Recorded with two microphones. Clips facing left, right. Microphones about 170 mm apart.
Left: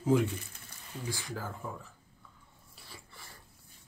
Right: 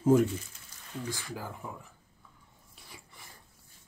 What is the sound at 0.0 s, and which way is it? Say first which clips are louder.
Speech: right 4 dB; 45° right (ahead or behind).